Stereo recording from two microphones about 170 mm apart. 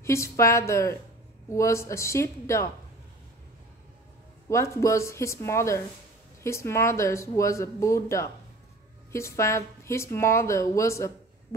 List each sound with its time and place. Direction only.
0.0 s a woman's voice: 15° left (ahead or behind)
4.5 s a woman's voice: 15° left (ahead or behind)